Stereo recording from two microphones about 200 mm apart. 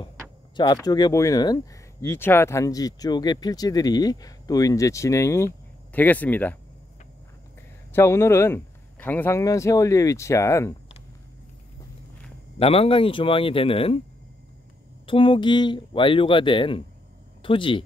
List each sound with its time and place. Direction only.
0.8 s speech: 20° left (ahead or behind)
7.9 s speech: 15° left (ahead or behind)
12.5 s speech: 30° left (ahead or behind)
15.0 s speech: 25° left (ahead or behind)